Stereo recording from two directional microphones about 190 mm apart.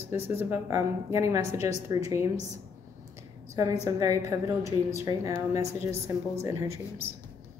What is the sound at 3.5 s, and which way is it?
A woman's voice, 15° right (ahead or behind).